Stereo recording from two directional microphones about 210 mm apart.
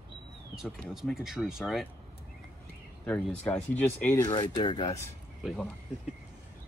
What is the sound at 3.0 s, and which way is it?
Speech, 5° left (ahead or behind).